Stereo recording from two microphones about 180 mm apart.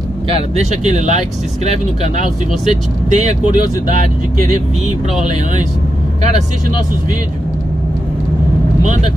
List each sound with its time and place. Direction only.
0.6 s speech: 40° right (ahead or behind)